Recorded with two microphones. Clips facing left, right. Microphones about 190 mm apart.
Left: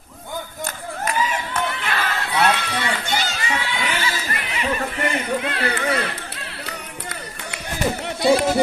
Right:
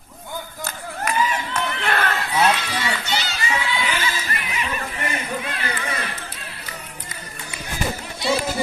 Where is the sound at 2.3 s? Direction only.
55° left (ahead or behind).